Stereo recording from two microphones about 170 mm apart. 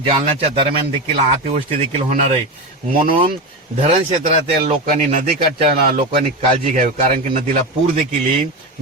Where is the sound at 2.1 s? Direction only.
50° right (ahead or behind).